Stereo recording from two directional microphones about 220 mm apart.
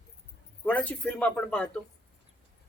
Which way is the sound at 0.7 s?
5° left (ahead or behind).